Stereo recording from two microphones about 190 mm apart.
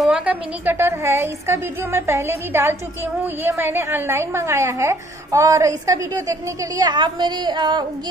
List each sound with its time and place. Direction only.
0.0 s a woman's voice: 5° right (ahead or behind); by 7.8 s 25° right (ahead or behind)